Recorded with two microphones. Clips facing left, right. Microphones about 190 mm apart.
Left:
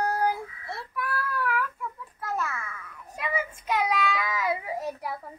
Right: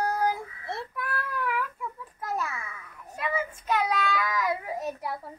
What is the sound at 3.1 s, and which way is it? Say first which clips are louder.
Child singing: right 1 dB; 10° left (ahead or behind).